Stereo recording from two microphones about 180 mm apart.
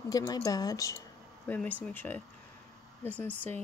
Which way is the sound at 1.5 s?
10° left (ahead or behind).